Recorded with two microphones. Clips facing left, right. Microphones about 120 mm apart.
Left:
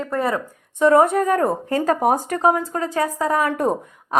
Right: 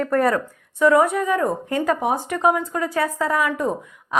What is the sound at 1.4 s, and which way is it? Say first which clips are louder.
Speech: left 2 dB; 35° left (ahead or behind).